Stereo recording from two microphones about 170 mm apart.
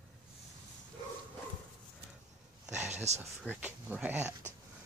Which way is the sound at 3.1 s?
40° right (ahead or behind).